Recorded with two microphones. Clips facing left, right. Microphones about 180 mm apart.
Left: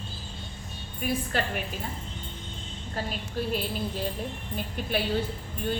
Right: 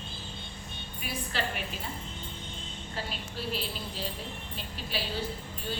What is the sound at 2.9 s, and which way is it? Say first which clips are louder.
A woman's voice: left 6 dB; 45° left (ahead or behind).